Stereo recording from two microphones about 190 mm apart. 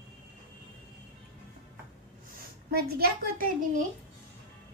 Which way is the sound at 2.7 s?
55° right (ahead or behind).